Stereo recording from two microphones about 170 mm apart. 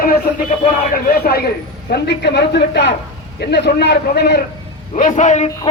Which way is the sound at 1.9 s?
80° left.